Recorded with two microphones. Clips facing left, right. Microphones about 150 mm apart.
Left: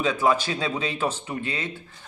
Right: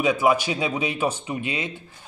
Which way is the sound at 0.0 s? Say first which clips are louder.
Right 2 dB; 15° right (ahead or behind).